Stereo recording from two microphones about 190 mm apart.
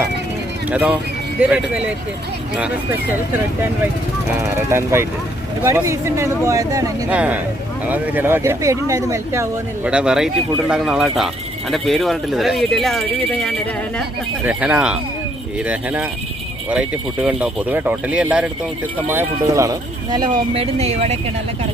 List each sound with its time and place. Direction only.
0.7 s speech: 5° right (ahead or behind)
4.5 s speech: 15° right (ahead or behind); by 14.0 s 5° left (ahead or behind)
14.4 s speech: 5° right (ahead or behind)
20.5 s speech: 30° right (ahead or behind)